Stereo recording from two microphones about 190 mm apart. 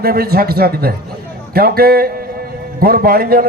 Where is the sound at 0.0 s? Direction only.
55° right (ahead or behind).